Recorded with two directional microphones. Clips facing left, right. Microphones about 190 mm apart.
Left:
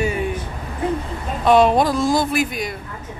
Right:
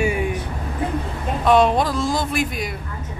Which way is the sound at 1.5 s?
5° left (ahead or behind).